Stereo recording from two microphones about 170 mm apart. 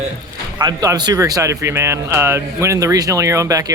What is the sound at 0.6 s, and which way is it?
Speech, 25° right (ahead or behind).